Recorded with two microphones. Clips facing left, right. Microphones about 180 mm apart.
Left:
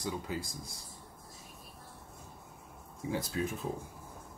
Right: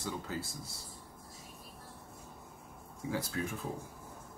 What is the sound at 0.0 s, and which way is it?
Speech, 15° left (ahead or behind).